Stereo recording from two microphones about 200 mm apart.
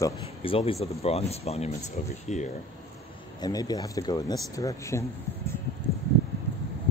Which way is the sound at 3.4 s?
20° left (ahead or behind).